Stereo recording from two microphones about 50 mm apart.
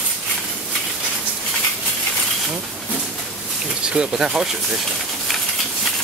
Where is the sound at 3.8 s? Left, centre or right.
Centre.